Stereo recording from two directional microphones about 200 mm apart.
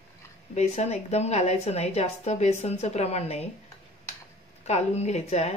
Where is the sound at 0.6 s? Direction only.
35° left (ahead or behind).